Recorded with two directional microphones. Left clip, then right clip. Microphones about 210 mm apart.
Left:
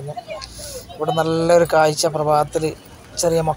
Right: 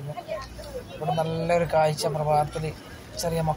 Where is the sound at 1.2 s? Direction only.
45° left (ahead or behind).